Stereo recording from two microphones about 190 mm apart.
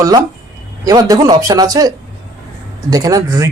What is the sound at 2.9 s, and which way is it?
Speech, 20° right (ahead or behind).